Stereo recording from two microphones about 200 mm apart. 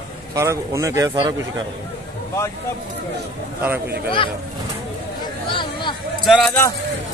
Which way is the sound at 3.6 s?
10° right (ahead or behind).